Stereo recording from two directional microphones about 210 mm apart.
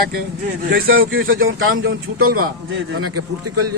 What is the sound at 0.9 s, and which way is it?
A man's voice, 70° right (ahead or behind).